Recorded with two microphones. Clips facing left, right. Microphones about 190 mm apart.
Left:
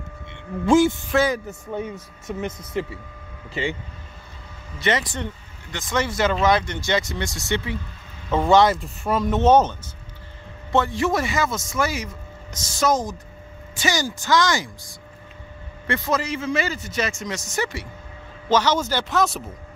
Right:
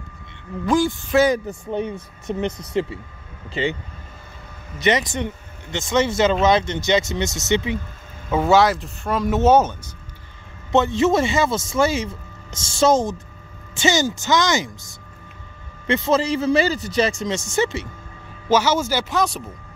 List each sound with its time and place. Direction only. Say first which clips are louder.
0.3 s speech: left 3 dB; 20° left (ahead or behind)
2.3 s speech: right 4 dB; 25° right (ahead or behind)
4.7 s speech: right 4 dB; 20° right (ahead or behind)
8.3 s speech: even; 5° right (ahead or behind)
10.7 s speech: right 4 dB; 20° right (ahead or behind)
15.9 s a man's voice: right 5 dB; 25° right (ahead or behind)
18.5 s a man's voice: right 2 dB; 10° right (ahead or behind)